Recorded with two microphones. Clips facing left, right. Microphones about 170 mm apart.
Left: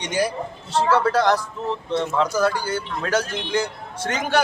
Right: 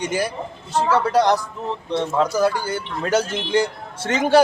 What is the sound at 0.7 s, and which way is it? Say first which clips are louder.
Speech: even; 15° right (ahead or behind).